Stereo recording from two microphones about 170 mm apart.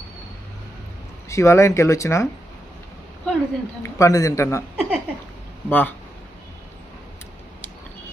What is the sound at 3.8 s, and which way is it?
Speech, 20° left (ahead or behind).